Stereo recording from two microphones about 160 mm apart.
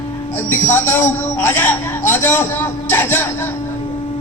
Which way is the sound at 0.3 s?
15° left (ahead or behind).